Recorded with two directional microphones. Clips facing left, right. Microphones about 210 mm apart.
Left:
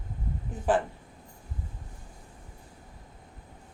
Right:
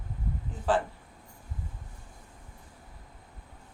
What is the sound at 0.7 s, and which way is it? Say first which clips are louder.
Speech: left 1 dB; 15° left (ahead or behind).